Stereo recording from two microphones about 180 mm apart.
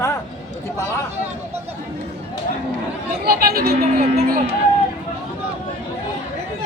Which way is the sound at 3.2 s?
55° right (ahead or behind).